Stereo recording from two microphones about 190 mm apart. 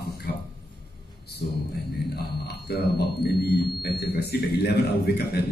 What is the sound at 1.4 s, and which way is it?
A man's voice, 50° left (ahead or behind).